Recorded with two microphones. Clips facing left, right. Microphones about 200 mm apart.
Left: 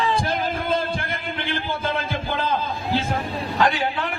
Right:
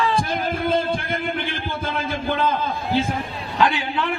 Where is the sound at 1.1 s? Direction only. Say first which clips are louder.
Right 3 dB; 55° right (ahead or behind).